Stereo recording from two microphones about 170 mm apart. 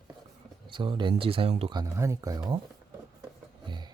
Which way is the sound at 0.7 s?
25° right (ahead or behind).